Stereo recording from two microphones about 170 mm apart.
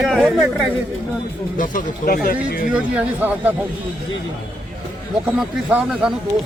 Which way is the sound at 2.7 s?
5° right (ahead or behind).